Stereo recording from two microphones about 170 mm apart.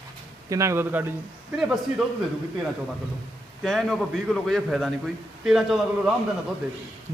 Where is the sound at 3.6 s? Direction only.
Centre (ahead or behind).